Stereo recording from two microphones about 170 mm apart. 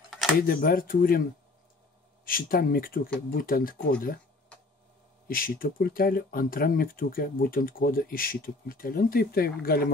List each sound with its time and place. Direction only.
0.4 s speech: 60° left (ahead or behind)
2.2 s speech: 55° left (ahead or behind)
4.5 s a sound: 5° left (ahead or behind)
5.3 s speech: 60° left (ahead or behind)